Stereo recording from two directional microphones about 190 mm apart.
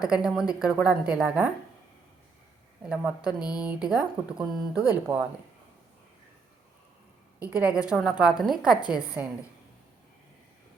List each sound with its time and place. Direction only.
0.0 s speech: 5° right (ahead or behind)
2.8 s speech: 5° right (ahead or behind)
3.2 s speech: 20° left (ahead or behind)
3.6 s speech: 5° right (ahead or behind)
7.3 s a woman's voice: 10° right (ahead or behind)